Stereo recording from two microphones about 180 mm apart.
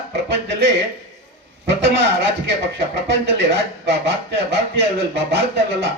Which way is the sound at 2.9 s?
75° right (ahead or behind).